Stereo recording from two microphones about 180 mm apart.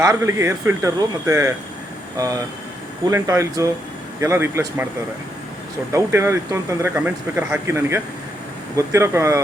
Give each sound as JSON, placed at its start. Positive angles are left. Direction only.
{"t": 0.0, "sound": "speech", "side_deg": -15}
{"t": 5.9, "sound": "speech", "side_deg": -15}